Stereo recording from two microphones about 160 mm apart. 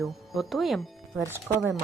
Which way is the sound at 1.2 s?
15° right (ahead or behind).